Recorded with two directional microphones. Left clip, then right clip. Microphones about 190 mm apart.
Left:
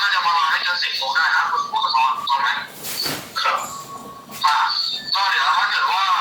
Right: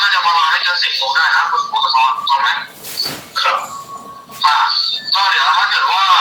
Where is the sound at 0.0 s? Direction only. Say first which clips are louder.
Right 5 dB; 30° right (ahead or behind).